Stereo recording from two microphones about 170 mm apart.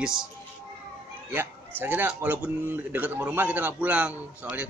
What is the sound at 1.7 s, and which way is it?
A man's voice, 10° right (ahead or behind).